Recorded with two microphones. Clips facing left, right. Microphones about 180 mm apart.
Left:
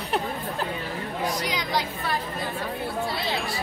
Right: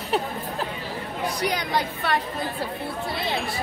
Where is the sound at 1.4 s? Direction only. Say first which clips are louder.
Right 3 dB; 60° right (ahead or behind).